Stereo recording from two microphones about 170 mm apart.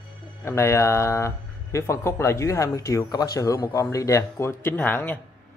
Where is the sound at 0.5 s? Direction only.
15° left (ahead or behind).